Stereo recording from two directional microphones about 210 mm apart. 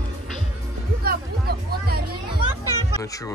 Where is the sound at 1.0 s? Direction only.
45° right (ahead or behind).